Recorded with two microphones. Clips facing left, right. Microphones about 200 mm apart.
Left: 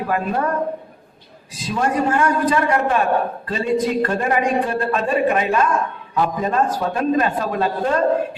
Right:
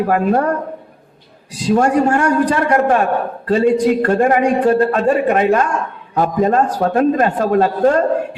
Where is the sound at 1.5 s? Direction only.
75° right (ahead or behind).